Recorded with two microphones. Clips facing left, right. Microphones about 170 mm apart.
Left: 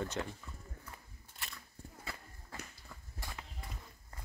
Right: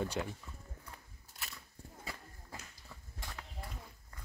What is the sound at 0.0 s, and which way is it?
Speech, 10° right (ahead or behind).